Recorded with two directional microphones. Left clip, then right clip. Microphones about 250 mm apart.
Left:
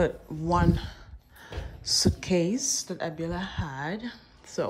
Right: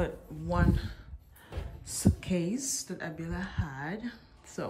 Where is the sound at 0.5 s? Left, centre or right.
Centre.